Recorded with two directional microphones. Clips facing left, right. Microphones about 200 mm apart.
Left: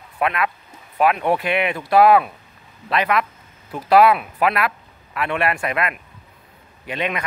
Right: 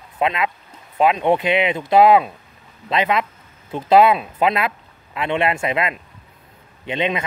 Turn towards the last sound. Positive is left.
turn(degrees=-25)  # may be behind; listen again after turning